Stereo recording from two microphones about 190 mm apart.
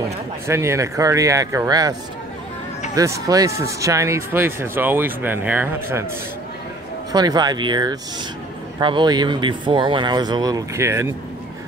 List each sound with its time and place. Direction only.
0.5 s speech: 15° right (ahead or behind)
3.0 s speech: 20° right (ahead or behind)
7.1 s speech: 20° right (ahead or behind)